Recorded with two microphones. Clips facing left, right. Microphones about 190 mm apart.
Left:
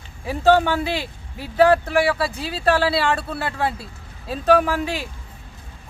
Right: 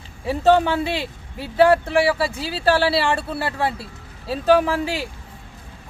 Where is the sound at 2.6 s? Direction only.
30° right (ahead or behind).